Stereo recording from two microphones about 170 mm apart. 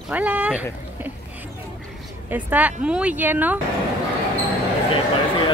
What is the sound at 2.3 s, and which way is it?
Speech, 10° right (ahead or behind).